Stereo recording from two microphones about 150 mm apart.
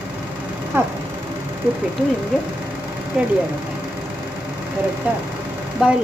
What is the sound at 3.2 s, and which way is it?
Speech, 10° right (ahead or behind).